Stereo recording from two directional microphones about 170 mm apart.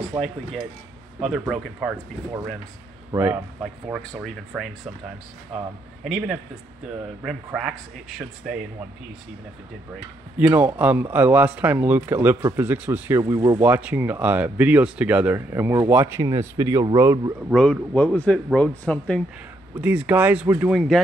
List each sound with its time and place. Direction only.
0.1 s speech: 20° right (ahead or behind)
1.5 s a man's voice: centre (ahead or behind)
3.1 s speech: 15° right (ahead or behind)
4.5 s a man's voice: centre (ahead or behind)
6.0 s a man's voice: centre (ahead or behind)
10.3 s speech: 10° right (ahead or behind)
13.2 s speech: 25° right (ahead or behind)
13.6 s speech: 10° right (ahead or behind)
17.5 s speech: 5° left (ahead or behind)
19.8 s speech: 10° right (ahead or behind)
20.7 s a man's voice: centre (ahead or behind)